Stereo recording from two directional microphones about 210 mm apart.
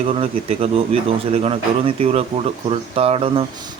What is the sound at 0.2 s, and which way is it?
Speech, 30° right (ahead or behind).